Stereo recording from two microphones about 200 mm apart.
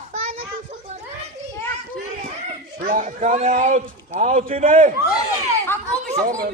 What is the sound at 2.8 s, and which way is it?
A man's voice, 40° right (ahead or behind).